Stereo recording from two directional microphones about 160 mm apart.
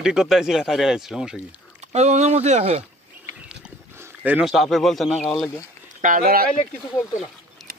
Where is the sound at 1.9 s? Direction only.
45° right (ahead or behind).